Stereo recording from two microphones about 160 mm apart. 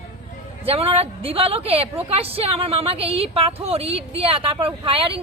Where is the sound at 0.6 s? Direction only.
40° right (ahead or behind).